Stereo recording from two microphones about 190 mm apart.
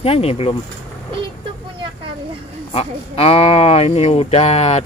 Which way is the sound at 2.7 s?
30° left (ahead or behind).